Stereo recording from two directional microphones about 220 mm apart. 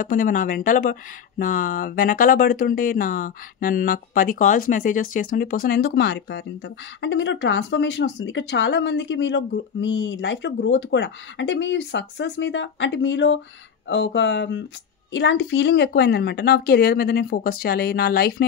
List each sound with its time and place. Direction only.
0.0 s a woman's voice: 40° left (ahead or behind)